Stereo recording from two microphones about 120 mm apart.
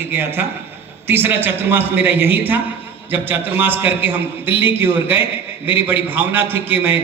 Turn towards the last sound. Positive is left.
turn(degrees=-15)  # may be behind; listen again after turning